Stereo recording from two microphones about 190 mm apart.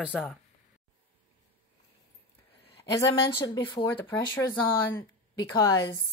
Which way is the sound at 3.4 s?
25° left (ahead or behind).